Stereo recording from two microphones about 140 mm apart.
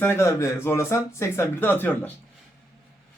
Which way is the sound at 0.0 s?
20° left (ahead or behind).